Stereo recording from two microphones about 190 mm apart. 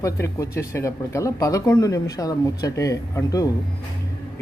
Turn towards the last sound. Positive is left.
turn(degrees=15)  # may be behind; listen again after turning